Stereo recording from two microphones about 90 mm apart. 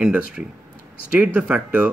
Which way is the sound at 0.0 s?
10° right (ahead or behind).